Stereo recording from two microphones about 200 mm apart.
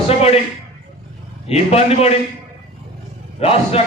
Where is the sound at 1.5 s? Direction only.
30° left (ahead or behind).